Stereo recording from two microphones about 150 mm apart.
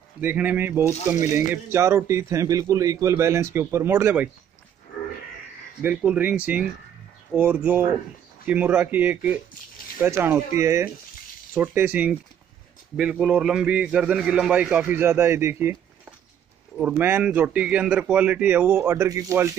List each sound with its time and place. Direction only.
0.2 s a man's voice: 10° right (ahead or behind)
5.8 s a man's voice: 10° right (ahead or behind)